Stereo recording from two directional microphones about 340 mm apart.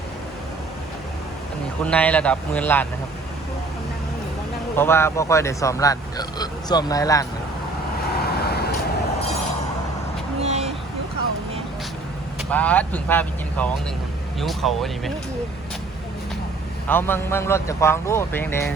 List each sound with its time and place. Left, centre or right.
1.8 s speech: centre
4.8 s speech: centre
8.2 s vehicle: left
10.4 s vehicle: centre
12.5 s speech: centre
16.9 s speech: centre